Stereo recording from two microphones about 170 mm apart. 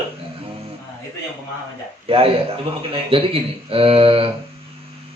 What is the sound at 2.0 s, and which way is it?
Speech, 35° right (ahead or behind).